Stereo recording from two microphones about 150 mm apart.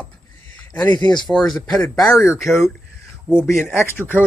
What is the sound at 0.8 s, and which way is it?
Speech, 30° left (ahead or behind).